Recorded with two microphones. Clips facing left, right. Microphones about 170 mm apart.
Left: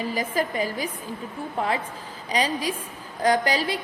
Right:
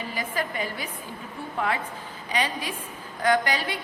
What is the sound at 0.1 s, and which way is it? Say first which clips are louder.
A woman's voice: left 4 dB; 40° left (ahead or behind).